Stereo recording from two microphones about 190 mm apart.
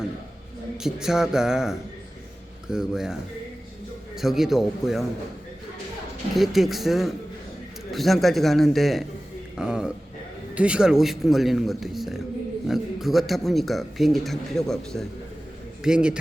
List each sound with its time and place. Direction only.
0.8 s speech: 5° right (ahead or behind)
6.3 s speech: centre (ahead or behind)